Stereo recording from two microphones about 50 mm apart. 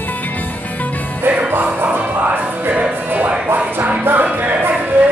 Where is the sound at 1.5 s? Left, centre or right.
Right.